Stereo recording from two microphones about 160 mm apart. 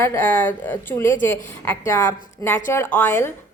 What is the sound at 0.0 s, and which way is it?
A woman's voice, 15° left (ahead or behind).